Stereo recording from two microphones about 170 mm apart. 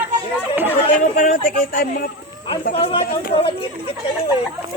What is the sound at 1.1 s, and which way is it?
Speech, 50° left (ahead or behind).